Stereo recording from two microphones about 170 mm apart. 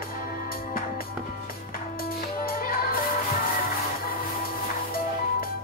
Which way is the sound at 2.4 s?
60° left (ahead or behind).